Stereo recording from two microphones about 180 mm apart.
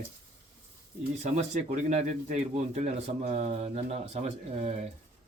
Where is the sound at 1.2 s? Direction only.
40° right (ahead or behind).